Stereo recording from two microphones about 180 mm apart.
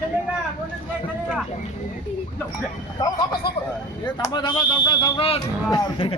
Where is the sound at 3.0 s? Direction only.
20° left (ahead or behind).